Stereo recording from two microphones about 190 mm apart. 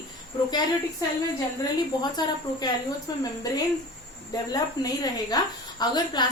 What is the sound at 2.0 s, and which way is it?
A woman's voice, 20° left (ahead or behind).